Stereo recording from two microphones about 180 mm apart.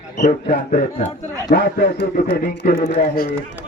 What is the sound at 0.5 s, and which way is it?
A man's voice, 50° left (ahead or behind).